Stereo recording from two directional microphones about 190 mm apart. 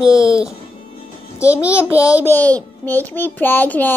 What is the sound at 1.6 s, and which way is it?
Speech, 5° right (ahead or behind).